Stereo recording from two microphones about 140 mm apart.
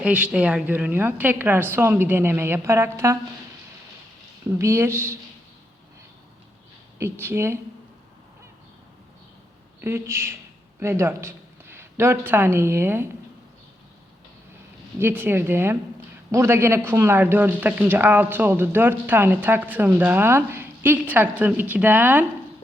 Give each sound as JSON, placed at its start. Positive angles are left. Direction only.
{"t": 0.0, "sound": "speech", "side_deg": -10}
{"t": 4.4, "sound": "a woman's voice", "side_deg": -20}
{"t": 7.0, "sound": "speech", "side_deg": -15}
{"t": 9.8, "sound": "a woman's voice", "side_deg": -20}
{"t": 14.9, "sound": "speech", "side_deg": -15}